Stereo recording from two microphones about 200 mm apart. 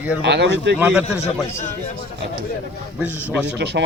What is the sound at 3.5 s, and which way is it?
Speech, 60° right (ahead or behind).